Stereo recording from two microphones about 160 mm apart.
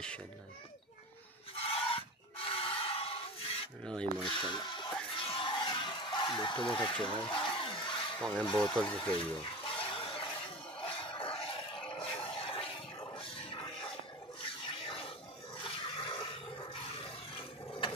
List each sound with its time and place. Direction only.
1.7 s a sound: 35° left (ahead or behind)
3.8 s filing: 5° left (ahead or behind)
4.3 s speech: 30° left (ahead or behind)
5.1 s battle cry: 35° left (ahead or behind)
7.2 s a sound: 30° left (ahead or behind)
8.5 s speech: 5° left (ahead or behind)
9.1 s water: 35° left (ahead or behind)
10.8 s music: 35° left (ahead or behind)
11.9 s a sound: 35° left (ahead or behind)
14.4 s toilet flush: 35° left (ahead or behind)